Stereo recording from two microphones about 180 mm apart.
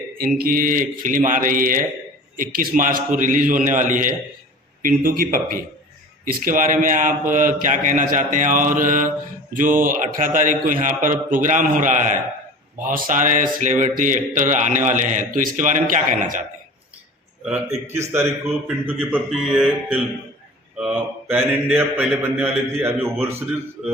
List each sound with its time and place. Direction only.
0.3 s speech: 50° right (ahead or behind)
17.4 s a man's voice: 5° right (ahead or behind)